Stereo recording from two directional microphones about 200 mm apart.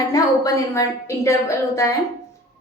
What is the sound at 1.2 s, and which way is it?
Speech, 15° left (ahead or behind).